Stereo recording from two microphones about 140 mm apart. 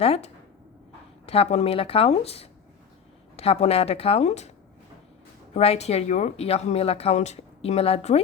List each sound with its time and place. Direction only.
0.0 s speech: 45° left (ahead or behind)
1.3 s speech: 45° left (ahead or behind)
5.5 s speech: 50° left (ahead or behind)